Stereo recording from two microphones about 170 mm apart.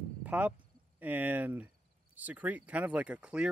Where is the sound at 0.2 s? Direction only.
10° right (ahead or behind).